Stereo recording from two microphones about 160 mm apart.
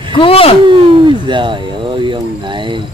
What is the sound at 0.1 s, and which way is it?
Speech, 35° left (ahead or behind).